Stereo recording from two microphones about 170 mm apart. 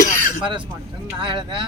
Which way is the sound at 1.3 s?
25° right (ahead or behind).